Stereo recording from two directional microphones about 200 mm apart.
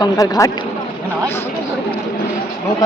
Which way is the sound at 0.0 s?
15° left (ahead or behind).